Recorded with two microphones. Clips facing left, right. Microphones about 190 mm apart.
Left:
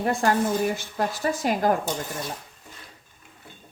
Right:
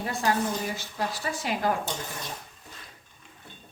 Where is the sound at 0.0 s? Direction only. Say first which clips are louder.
Left 5 dB; 50° left (ahead or behind).